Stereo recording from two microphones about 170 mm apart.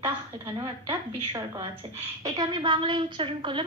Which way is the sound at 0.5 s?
20° right (ahead or behind).